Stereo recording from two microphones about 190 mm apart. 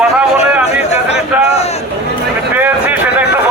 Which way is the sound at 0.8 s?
35° left (ahead or behind).